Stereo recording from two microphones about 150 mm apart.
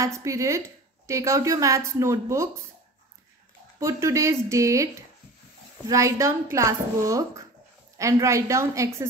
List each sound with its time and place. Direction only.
0.0 s a woman's voice: 20° right (ahead or behind)
3.8 s a woman's voice: 20° right (ahead or behind)
5.9 s a woman's voice: 20° right (ahead or behind)